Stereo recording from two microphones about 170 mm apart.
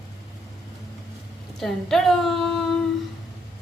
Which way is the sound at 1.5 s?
Centre (ahead or behind).